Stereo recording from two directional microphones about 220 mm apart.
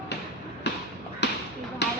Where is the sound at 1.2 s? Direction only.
50° left (ahead or behind).